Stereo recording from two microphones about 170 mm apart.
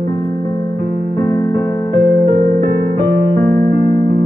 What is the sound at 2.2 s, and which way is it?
Music, 40° right (ahead or behind).